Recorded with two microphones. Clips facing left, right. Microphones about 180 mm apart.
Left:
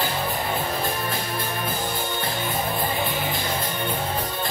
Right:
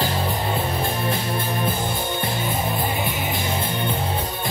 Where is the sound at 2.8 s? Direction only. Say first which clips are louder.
Right 1 dB; 20° right (ahead or behind).